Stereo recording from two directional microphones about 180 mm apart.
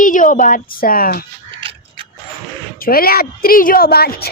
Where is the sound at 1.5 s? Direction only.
30° right (ahead or behind).